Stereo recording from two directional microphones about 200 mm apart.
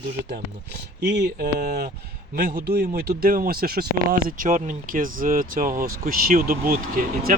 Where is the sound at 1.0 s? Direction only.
55° right (ahead or behind).